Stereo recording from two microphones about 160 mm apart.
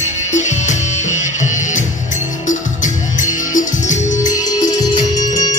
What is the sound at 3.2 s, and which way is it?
Music, 50° left (ahead or behind).